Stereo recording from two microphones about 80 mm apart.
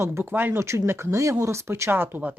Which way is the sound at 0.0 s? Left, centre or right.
Right.